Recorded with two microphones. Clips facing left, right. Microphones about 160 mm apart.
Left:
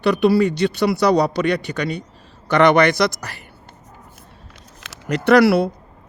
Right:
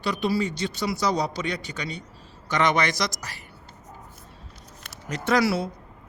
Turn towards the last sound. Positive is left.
turn(degrees=65)  # may be behind; listen again after turning